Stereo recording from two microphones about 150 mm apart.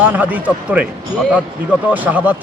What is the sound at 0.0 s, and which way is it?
Speech, 10° right (ahead or behind).